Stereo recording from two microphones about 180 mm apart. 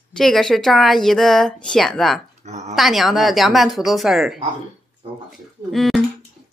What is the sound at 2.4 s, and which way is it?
Speech, 40° right (ahead or behind).